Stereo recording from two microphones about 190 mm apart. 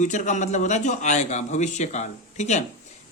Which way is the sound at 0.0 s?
40° left (ahead or behind).